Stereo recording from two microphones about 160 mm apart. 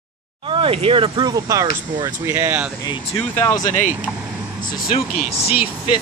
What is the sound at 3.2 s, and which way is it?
Speech, 10° left (ahead or behind).